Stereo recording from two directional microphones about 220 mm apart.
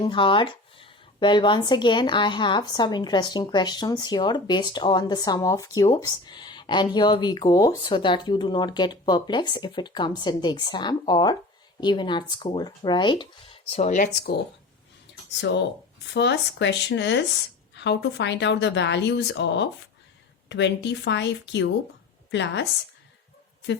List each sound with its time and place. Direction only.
0.0 s a woman's voice: 20° left (ahead or behind); by 14.4 s 40° left (ahead or behind)
15.4 s a woman's voice: 55° left (ahead or behind)